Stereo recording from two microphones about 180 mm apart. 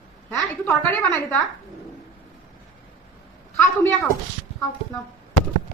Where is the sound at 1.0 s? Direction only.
10° left (ahead or behind).